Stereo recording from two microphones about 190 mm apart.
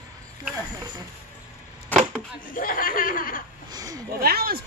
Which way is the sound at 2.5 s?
45° left (ahead or behind).